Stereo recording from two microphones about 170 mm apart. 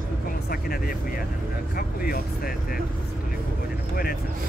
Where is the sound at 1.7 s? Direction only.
60° left (ahead or behind).